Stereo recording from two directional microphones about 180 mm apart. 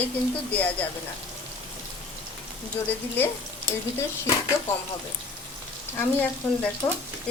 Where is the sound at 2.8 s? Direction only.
10° left (ahead or behind).